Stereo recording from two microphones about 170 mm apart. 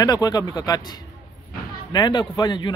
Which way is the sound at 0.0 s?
20° left (ahead or behind).